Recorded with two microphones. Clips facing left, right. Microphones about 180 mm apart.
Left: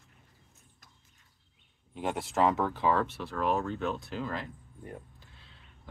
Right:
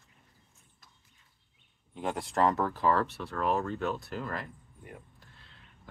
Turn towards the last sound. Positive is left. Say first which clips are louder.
# left 1 dB
turn(degrees=0)  # may be behind; listen again after turning